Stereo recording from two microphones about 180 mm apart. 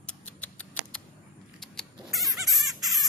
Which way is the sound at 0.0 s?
5° left (ahead or behind).